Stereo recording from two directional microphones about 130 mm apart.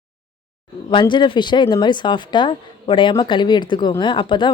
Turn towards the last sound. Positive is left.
turn(degrees=35)  # may be behind; listen again after turning